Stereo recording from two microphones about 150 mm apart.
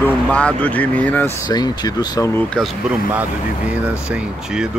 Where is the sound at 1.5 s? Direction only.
25° left (ahead or behind).